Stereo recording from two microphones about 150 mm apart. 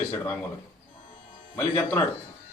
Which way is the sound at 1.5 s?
10° left (ahead or behind).